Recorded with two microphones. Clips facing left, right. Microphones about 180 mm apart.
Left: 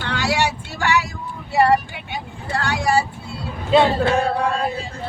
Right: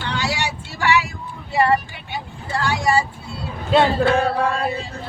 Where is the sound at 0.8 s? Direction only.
45° left (ahead or behind).